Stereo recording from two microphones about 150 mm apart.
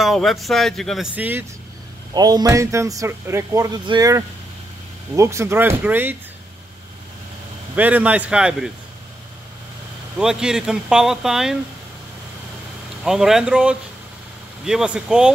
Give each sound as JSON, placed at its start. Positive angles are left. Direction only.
{"t": 0.0, "sound": "speech", "side_deg": 0}
{"t": 1.1, "sound": "speech", "side_deg": -10}
{"t": 2.1, "sound": "speech", "side_deg": -25}
{"t": 7.7, "sound": "speech", "side_deg": -10}
{"t": 10.1, "sound": "speech", "side_deg": -5}
{"t": 13.0, "sound": "speech", "side_deg": -5}